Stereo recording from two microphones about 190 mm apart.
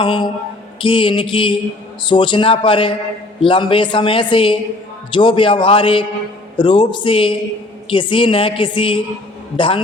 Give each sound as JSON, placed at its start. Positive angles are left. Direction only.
{"t": 0.0, "sound": "speech", "side_deg": 20}